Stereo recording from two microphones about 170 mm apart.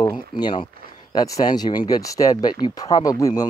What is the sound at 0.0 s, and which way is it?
Speech, 25° left (ahead or behind).